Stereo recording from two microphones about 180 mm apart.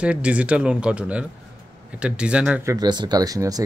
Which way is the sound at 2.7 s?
25° right (ahead or behind).